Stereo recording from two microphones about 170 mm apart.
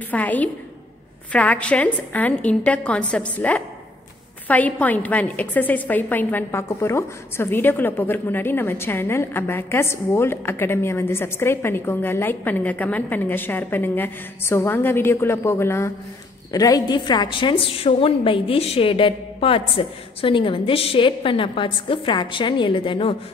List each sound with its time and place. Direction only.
0.1 s a woman's voice: 10° left (ahead or behind); by 23.1 s 30° left (ahead or behind)